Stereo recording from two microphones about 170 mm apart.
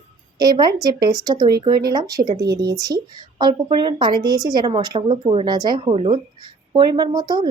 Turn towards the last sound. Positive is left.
turn(degrees=-25)  # may be behind; listen again after turning